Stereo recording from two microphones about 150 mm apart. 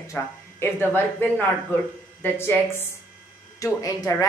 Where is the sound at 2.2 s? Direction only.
15° left (ahead or behind).